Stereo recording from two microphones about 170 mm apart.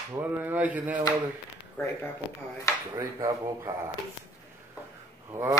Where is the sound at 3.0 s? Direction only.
15° right (ahead or behind).